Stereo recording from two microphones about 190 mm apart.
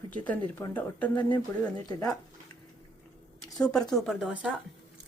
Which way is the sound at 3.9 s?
Centre (ahead or behind).